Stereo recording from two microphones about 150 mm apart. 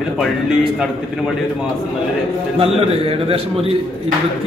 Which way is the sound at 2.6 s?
40° right (ahead or behind).